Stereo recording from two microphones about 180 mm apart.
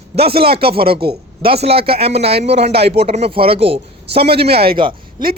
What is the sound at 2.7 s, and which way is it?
Speech, 65° right (ahead or behind).